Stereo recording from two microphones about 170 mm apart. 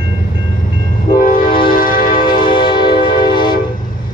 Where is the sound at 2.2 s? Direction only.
25° left (ahead or behind).